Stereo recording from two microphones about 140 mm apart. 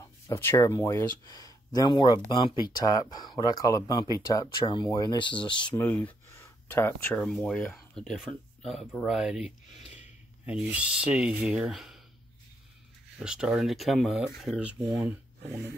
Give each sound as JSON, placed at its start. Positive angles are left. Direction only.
{"t": 0.3, "sound": "speech", "side_deg": 15}
{"t": 5.8, "sound": "speech", "side_deg": 15}
{"t": 7.2, "sound": "speech", "side_deg": 5}
{"t": 13.2, "sound": "speech", "side_deg": -5}